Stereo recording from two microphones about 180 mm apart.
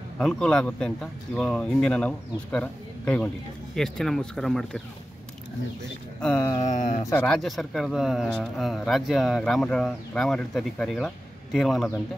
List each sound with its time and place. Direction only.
0.2 s speech: 5° left (ahead or behind)
6.2 s speech: 10° left (ahead or behind)
6.7 s speech: 40° left (ahead or behind)
7.2 s speech: centre (ahead or behind)